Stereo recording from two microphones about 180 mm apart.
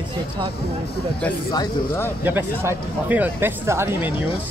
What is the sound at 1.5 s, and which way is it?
Speech, 20° left (ahead or behind).